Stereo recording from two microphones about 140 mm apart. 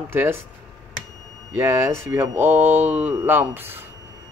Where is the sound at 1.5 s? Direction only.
20° right (ahead or behind).